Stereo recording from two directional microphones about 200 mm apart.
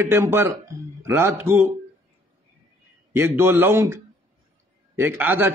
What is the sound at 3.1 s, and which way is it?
A man's voice, 10° right (ahead or behind).